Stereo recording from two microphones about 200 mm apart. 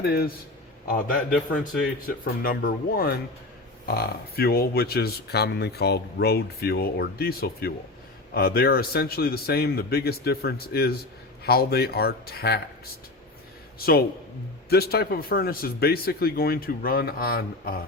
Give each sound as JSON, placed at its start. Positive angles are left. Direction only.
{"t": 0.0, "sound": "speech", "side_deg": 50}
{"t": 13.7, "sound": "speech", "side_deg": 50}